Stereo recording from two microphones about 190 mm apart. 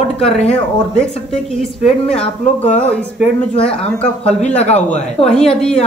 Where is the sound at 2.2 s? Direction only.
5° left (ahead or behind).